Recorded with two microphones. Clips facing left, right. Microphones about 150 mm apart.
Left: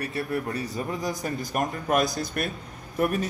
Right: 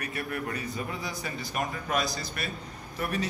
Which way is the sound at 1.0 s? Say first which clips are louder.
Left 6 dB; 45° left (ahead or behind).